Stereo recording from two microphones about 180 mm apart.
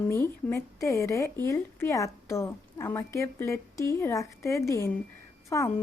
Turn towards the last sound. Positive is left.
turn(degrees=15)  # may be behind; listen again after turning